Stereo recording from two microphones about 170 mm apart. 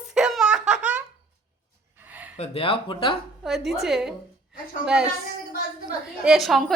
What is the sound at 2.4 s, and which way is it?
Speech, 35° left (ahead or behind).